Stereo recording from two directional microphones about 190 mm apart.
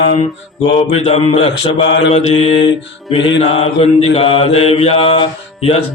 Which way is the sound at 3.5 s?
30° left (ahead or behind).